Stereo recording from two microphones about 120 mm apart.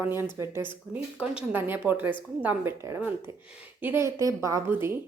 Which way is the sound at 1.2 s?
10° right (ahead or behind).